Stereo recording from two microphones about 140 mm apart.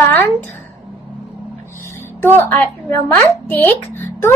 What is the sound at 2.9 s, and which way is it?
A woman's voice, 20° left (ahead or behind).